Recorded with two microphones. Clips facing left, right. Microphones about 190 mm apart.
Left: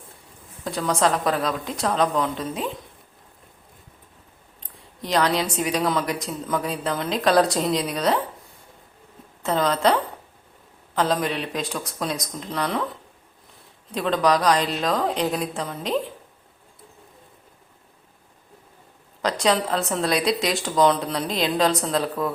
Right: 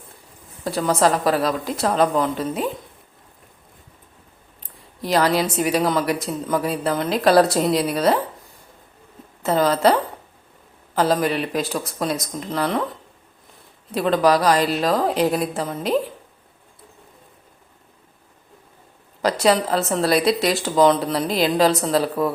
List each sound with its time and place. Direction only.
0.6 s a woman's voice: 5° right (ahead or behind)
4.6 s a woman's voice: 5° right (ahead or behind)
9.4 s a woman's voice: 5° right (ahead or behind)
19.2 s a woman's voice: 5° right (ahead or behind)